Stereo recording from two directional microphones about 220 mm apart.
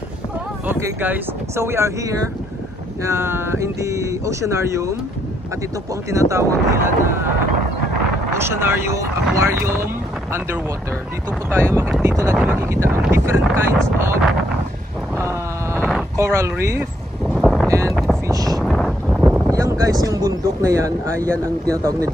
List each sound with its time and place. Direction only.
0.7 s speech: 10° right (ahead or behind)
6.0 s speech: 15° right (ahead or behind)
8.4 s speech: 10° right (ahead or behind)
11.5 s speech: 10° right (ahead or behind)
15.1 s sheep: 15° right (ahead or behind)
16.2 s speech: 10° right (ahead or behind)
17.3 s boat: centre (ahead or behind)
17.6 s boat: 15° right (ahead or behind)
18.3 s a sound: 15° right (ahead or behind)
18.6 s a sound: centre (ahead or behind)
21.3 s speech: 15° right (ahead or behind)